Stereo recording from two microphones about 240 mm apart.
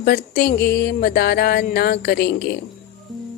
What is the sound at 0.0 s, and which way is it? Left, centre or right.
Music, left.